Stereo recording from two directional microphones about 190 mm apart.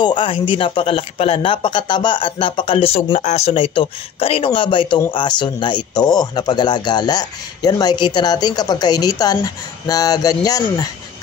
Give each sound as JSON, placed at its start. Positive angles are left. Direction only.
{"t": 0.0, "sound": "speech", "side_deg": 25}